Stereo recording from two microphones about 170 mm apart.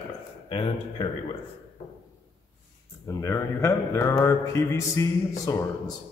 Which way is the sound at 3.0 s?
15° left (ahead or behind).